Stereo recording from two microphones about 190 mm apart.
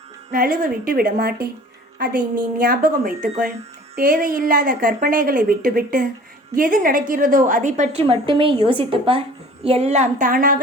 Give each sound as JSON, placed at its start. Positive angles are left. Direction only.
{"t": 0.3, "sound": "a woman's voice", "side_deg": -45}
{"t": 2.6, "sound": "a woman's voice", "side_deg": -50}
{"t": 8.0, "sound": "a woman's voice", "side_deg": -25}